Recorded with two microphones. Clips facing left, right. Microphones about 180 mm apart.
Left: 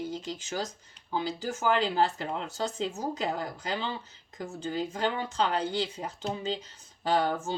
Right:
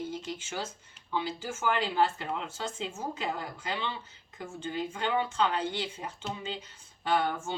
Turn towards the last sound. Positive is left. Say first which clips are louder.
# left 2 dB
turn(degrees=35)  # may be behind; listen again after turning